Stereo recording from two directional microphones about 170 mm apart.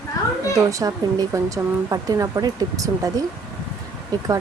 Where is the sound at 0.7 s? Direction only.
20° right (ahead or behind).